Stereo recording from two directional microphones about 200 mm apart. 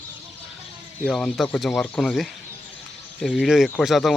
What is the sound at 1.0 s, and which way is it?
Speech, centre (ahead or behind).